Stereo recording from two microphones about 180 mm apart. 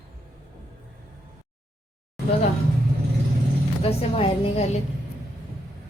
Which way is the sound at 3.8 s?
35° left (ahead or behind).